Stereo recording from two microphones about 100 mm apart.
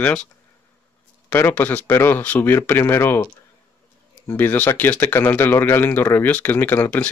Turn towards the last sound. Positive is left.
turn(degrees=20)  # may be behind; listen again after turning